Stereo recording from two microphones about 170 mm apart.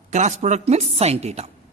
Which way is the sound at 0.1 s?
40° right (ahead or behind).